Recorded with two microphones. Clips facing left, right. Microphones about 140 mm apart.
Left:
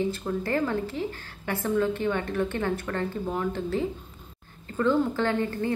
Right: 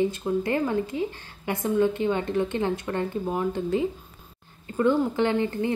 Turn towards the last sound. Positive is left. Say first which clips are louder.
# right 2 dB
turn(degrees=-15)  # may be behind; listen again after turning